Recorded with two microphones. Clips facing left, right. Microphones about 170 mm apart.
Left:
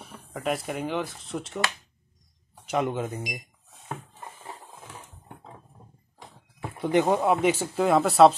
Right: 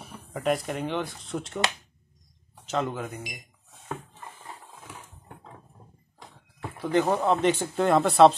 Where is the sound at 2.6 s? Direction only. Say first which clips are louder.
Left 2 dB; 15° left (ahead or behind).